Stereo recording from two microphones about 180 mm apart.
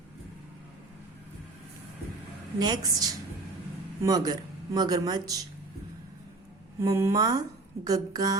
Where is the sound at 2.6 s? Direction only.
20° right (ahead or behind).